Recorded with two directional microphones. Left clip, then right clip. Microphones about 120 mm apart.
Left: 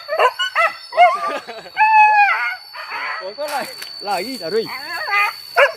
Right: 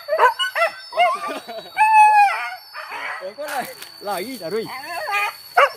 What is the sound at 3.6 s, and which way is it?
Speech, 35° right (ahead or behind).